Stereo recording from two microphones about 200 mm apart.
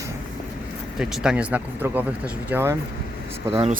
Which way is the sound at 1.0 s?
5° right (ahead or behind).